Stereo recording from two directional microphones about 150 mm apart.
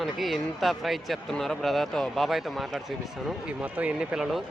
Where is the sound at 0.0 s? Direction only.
Centre (ahead or behind).